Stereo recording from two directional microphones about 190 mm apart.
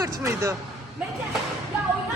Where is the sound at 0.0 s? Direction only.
15° right (ahead or behind).